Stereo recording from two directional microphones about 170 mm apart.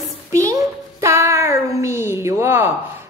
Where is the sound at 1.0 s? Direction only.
15° right (ahead or behind).